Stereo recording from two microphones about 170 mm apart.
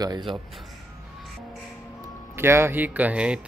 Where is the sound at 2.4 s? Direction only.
15° right (ahead or behind).